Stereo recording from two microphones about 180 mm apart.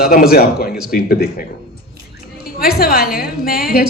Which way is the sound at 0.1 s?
55° left (ahead or behind).